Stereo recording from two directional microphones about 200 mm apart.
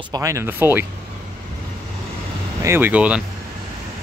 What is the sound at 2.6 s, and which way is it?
Speech, 10° right (ahead or behind).